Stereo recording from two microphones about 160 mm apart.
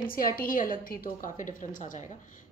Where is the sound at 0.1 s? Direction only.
65° left (ahead or behind).